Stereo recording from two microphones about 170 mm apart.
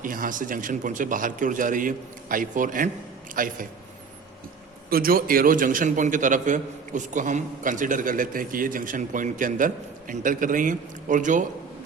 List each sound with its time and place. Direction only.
0.0 s a man's voice: 55° right (ahead or behind)
4.9 s a man's voice: 60° right (ahead or behind)